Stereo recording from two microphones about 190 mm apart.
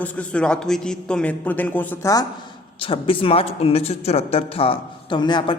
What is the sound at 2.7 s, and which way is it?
Speech, 30° left (ahead or behind).